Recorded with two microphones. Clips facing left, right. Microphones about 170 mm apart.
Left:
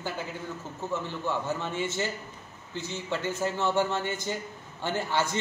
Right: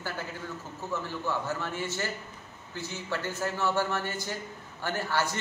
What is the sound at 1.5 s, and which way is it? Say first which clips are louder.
A man's voice: left 2 dB; 20° left (ahead or behind).